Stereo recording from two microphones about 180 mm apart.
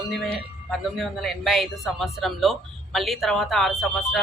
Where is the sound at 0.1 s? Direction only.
Centre (ahead or behind).